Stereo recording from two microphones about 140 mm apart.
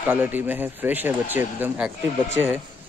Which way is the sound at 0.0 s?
15° right (ahead or behind).